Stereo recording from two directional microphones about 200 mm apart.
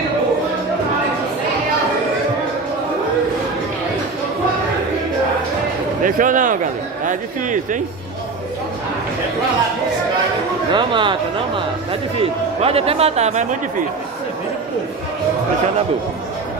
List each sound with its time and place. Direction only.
6.0 s speech: 40° right (ahead or behind)
10.7 s a man's voice: 25° right (ahead or behind)